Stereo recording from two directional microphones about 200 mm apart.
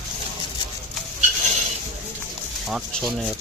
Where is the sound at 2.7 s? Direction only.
Centre (ahead or behind).